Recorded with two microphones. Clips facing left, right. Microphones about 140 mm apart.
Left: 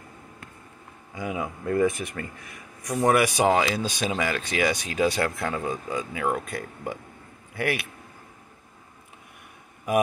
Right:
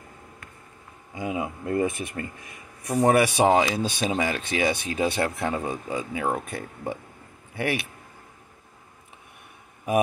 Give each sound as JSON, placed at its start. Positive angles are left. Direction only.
{"t": 1.1, "sound": "speech", "side_deg": -25}